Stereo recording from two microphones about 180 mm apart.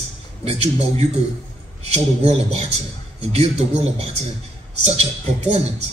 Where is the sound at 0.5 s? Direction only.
35° right (ahead or behind).